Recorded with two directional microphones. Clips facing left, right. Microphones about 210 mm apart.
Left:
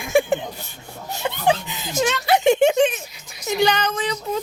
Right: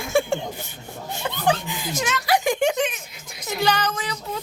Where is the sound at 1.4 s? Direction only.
20° left (ahead or behind).